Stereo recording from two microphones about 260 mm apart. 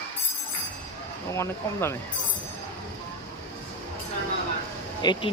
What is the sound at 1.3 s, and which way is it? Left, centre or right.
Speech, centre.